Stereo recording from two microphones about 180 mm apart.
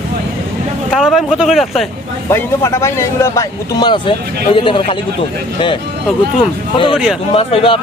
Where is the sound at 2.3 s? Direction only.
15° left (ahead or behind).